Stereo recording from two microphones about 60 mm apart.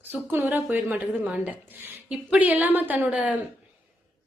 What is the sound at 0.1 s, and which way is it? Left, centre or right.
Speech, right.